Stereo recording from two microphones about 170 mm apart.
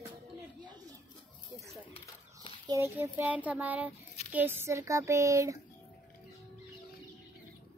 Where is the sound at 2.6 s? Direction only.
20° right (ahead or behind).